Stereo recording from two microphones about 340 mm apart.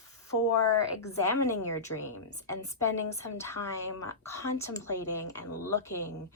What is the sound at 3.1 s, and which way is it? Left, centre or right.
Speech, centre.